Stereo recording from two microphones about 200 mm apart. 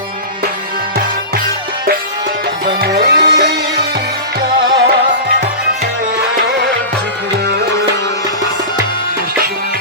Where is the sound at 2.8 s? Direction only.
55° right (ahead or behind).